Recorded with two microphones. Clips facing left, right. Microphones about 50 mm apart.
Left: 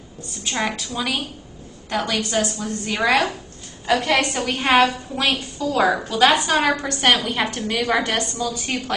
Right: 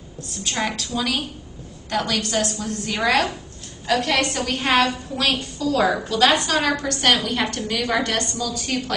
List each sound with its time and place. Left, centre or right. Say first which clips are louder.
0.4 s a woman's voice: left 1 dB; centre